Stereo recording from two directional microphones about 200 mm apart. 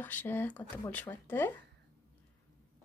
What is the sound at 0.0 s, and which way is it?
A woman's voice, 10° left (ahead or behind).